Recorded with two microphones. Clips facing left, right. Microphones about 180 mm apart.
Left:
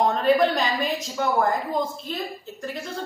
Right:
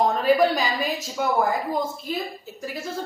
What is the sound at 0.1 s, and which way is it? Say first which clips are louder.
A woman's voice: even; 5° right (ahead or behind).